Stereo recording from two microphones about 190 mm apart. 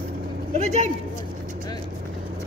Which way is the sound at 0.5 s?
35° right (ahead or behind).